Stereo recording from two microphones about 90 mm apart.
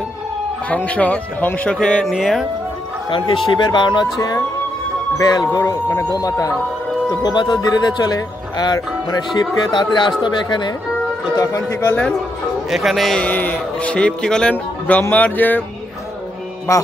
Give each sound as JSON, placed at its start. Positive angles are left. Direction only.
{"t": 0.7, "sound": "speech", "side_deg": 15}
{"t": 2.0, "sound": "a man's voice", "side_deg": 0}
{"t": 3.1, "sound": "speech", "side_deg": 60}
{"t": 11.3, "sound": "speech", "side_deg": 35}
{"t": 11.9, "sound": "speech", "side_deg": 15}
{"t": 12.6, "sound": "a man's voice", "side_deg": 0}
{"t": 13.2, "sound": "speech", "side_deg": 15}